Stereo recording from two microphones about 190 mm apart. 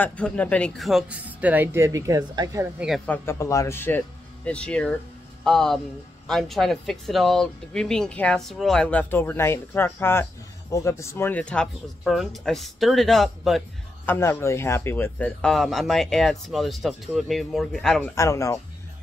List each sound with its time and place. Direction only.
0.0 s speech: 5° left (ahead or behind); by 2.7 s 20° right (ahead or behind)
3.1 s speech: 15° left (ahead or behind)
14.0 s speech: 10° left (ahead or behind)
18.1 s speech: 15° left (ahead or behind)